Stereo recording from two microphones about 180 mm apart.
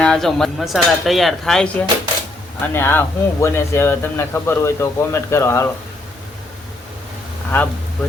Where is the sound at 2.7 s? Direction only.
10° left (ahead or behind).